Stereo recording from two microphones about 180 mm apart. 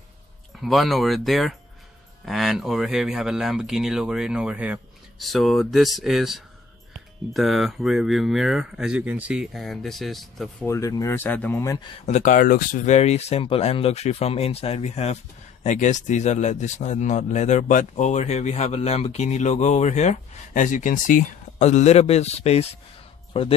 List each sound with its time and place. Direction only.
0.6 s speech: centre (ahead or behind)
10.7 s speech: 20° left (ahead or behind)
12.1 s speech: 45° left (ahead or behind)